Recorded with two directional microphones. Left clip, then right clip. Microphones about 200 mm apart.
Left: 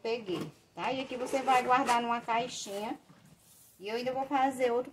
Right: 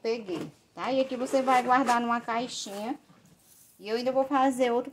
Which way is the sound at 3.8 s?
40° right (ahead or behind).